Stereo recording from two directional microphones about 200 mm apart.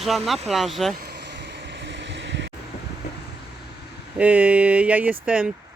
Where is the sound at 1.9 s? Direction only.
65° right (ahead or behind).